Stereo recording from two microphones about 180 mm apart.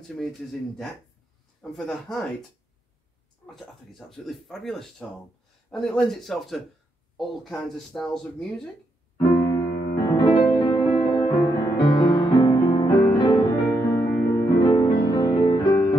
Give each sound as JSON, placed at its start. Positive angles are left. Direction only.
{"t": 0.0, "sound": "speech", "side_deg": 0}
{"t": 3.4, "sound": "speech", "side_deg": 0}
{"t": 9.9, "sound": "music", "side_deg": 25}
{"t": 14.7, "sound": "music", "side_deg": 25}